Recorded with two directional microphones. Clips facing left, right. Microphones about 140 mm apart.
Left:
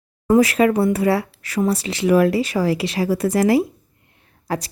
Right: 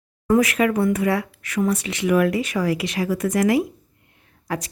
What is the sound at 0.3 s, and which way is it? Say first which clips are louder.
Speech: left 3 dB; 30° left (ahead or behind).